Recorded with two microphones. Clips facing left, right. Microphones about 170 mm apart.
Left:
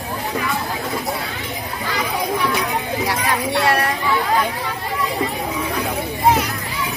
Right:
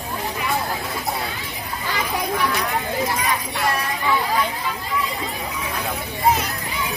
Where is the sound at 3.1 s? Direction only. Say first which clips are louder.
Left 3 dB; 75° left (ahead or behind).